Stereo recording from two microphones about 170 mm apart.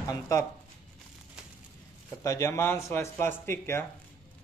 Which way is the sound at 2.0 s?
15° left (ahead or behind).